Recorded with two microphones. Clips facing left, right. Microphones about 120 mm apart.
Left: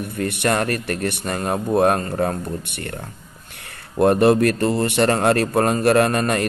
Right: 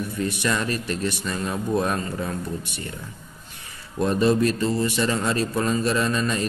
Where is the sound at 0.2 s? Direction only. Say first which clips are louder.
Left 5 dB; 60° left (ahead or behind).